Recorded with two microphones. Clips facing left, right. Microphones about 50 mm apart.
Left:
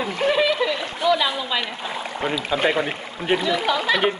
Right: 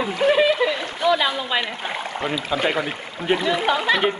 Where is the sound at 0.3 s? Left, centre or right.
Right.